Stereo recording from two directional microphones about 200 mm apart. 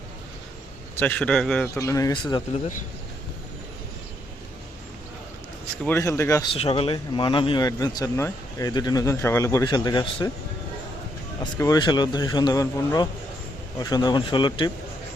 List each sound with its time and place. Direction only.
0.9 s a man's voice: 10° left (ahead or behind)
5.8 s speech: 15° left (ahead or behind)
11.6 s speech: 20° left (ahead or behind)